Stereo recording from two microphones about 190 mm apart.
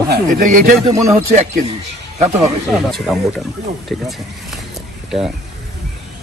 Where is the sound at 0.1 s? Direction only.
45° right (ahead or behind).